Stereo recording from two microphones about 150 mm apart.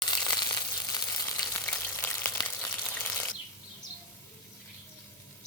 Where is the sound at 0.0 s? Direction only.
25° left (ahead or behind).